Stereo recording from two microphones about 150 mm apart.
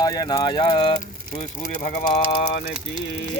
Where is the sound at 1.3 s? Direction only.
65° left (ahead or behind).